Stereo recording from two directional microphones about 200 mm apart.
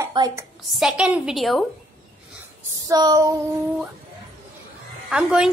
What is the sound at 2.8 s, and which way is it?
Speech, 20° right (ahead or behind).